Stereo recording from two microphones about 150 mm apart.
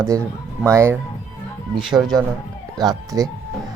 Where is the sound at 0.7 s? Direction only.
20° right (ahead or behind).